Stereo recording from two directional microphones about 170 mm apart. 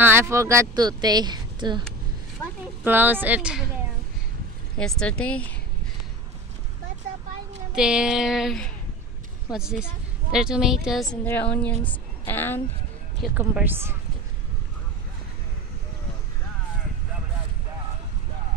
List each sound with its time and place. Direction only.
0.0 s speech: 15° right (ahead or behind)
2.8 s speech: 10° right (ahead or behind)
4.7 s speech: 5° left (ahead or behind)
7.7 s speech: 5° right (ahead or behind)
11.2 s speech: 10° left (ahead or behind)
13.3 s speech: 10° right (ahead or behind)